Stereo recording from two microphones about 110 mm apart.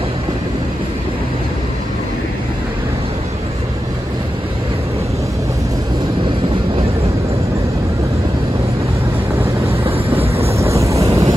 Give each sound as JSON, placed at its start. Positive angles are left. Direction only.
{"t": 9.7, "sound": "vehicle", "side_deg": -60}
{"t": 10.6, "sound": "vehicle", "side_deg": -25}